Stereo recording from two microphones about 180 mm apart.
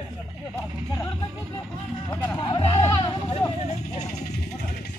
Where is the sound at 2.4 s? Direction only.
25° left (ahead or behind).